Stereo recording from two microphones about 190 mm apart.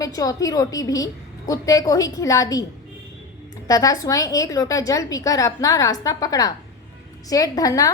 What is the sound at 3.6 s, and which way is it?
A woman's voice, 20° left (ahead or behind).